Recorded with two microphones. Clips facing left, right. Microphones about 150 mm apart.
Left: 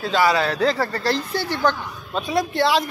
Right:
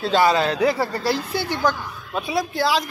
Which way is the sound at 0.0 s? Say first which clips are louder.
Right 1 dB; 25° right (ahead or behind).